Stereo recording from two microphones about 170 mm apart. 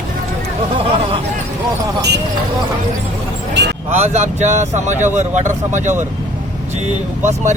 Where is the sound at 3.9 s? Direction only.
40° right (ahead or behind).